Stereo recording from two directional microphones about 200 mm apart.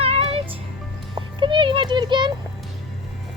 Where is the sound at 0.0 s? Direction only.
30° right (ahead or behind).